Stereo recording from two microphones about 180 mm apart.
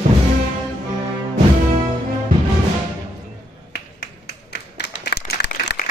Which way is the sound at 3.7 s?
65° left (ahead or behind).